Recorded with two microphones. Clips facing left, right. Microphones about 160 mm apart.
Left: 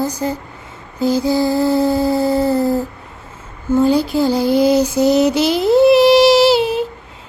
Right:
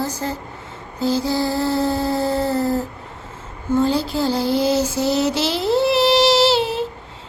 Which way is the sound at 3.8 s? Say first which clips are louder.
Left 5 dB; 15° left (ahead or behind).